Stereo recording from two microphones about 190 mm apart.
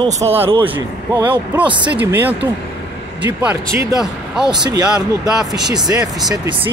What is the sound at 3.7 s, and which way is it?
Speech, 10° right (ahead or behind).